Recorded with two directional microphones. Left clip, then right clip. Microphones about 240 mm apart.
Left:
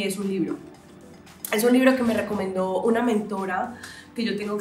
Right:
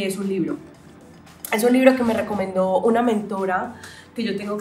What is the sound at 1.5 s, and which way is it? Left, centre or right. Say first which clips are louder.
Speech: right 3 dB; centre.